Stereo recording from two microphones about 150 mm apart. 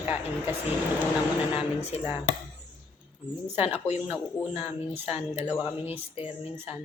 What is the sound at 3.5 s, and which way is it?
Speech, 10° right (ahead or behind).